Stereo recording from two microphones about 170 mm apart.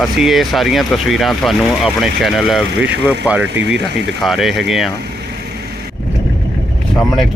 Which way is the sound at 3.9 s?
80° right.